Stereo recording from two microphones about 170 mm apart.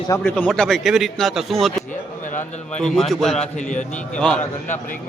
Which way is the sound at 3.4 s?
45° left (ahead or behind).